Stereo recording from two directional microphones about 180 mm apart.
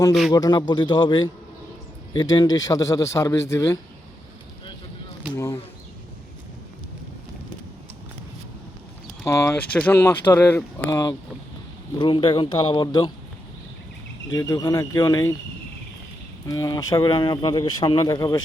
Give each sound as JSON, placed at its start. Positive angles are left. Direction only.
{"t": 0.1, "sound": "speech", "side_deg": 0}
{"t": 0.3, "sound": "speech", "side_deg": 20}
{"t": 2.3, "sound": "speech", "side_deg": 25}
{"t": 5.3, "sound": "speech", "side_deg": 15}
{"t": 9.2, "sound": "speech", "side_deg": 15}
{"t": 14.3, "sound": "speech", "side_deg": 20}
{"t": 16.5, "sound": "speech", "side_deg": 20}